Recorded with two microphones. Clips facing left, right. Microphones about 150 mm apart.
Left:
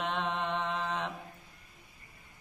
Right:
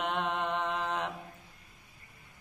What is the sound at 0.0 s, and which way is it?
Mantra, 5° right (ahead or behind).